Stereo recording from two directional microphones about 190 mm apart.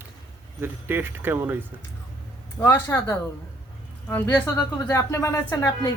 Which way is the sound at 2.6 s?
15° left (ahead or behind).